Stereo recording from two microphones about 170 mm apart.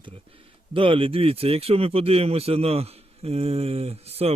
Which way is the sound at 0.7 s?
30° right (ahead or behind).